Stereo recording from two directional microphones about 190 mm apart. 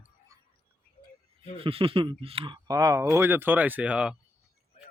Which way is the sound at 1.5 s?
30° right (ahead or behind).